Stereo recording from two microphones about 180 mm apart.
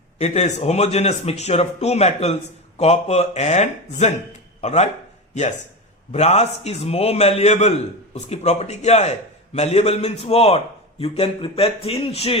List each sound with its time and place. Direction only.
0.2 s a man's voice: 40° left (ahead or behind)